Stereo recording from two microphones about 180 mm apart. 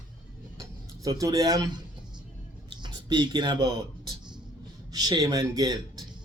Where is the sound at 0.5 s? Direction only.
20° right (ahead or behind).